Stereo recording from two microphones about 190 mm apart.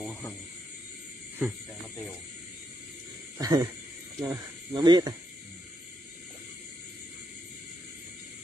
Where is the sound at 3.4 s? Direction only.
20° right (ahead or behind).